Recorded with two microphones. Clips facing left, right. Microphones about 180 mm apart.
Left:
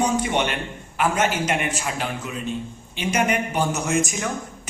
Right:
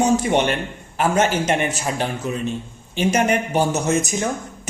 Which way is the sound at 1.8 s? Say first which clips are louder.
Right 4 dB; 35° right (ahead or behind).